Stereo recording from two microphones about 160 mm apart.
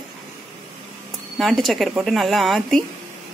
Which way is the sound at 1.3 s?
Centre (ahead or behind).